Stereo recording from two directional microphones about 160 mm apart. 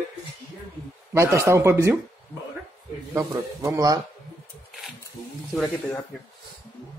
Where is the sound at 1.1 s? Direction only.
15° right (ahead or behind).